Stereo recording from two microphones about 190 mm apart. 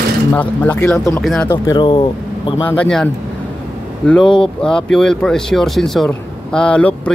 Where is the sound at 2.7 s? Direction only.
5° left (ahead or behind).